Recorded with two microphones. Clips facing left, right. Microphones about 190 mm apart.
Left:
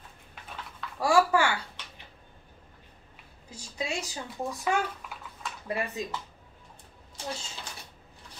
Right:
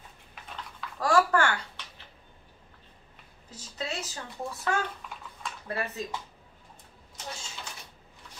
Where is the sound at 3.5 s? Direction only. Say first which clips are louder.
Left 2 dB; 10° left (ahead or behind).